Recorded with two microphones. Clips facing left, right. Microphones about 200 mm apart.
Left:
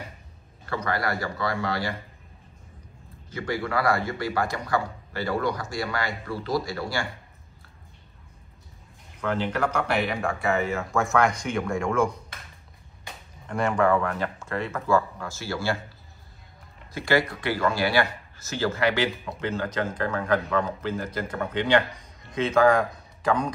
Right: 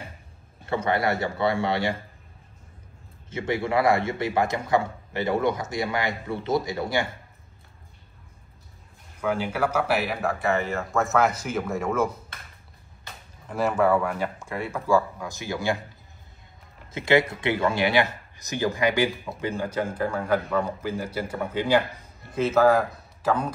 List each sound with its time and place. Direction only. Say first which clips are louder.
0.7 s a man's voice: right 4 dB; 25° right (ahead or behind)
3.3 s a man's voice: right 3 dB; 25° right (ahead or behind)
9.2 s speech: right 1 dB; 10° right (ahead or behind)
13.5 s speech: right 1 dB; 5° right (ahead or behind)
16.9 s a man's voice: right 3 dB; 20° right (ahead or behind); by 23.5 s 5° right (ahead or behind)